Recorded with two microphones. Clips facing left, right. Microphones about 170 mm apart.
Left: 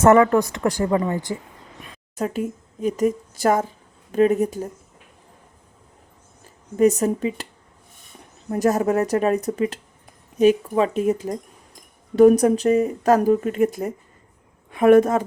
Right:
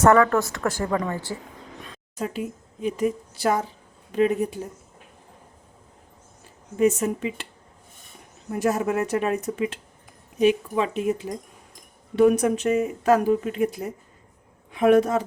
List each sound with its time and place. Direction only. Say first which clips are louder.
0.0 s speech: left 3 dB; 20° left (ahead or behind)
2.1 s speech: left 4 dB; 45° left (ahead or behind)
6.7 s speech: left 4 dB; 40° left (ahead or behind)
8.4 s speech: left 4 dB; 40° left (ahead or behind)